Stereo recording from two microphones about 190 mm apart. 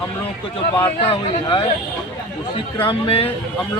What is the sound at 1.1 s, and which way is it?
Speech, 25° left (ahead or behind).